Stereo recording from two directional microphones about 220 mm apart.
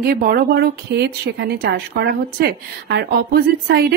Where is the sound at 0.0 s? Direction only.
40° right (ahead or behind).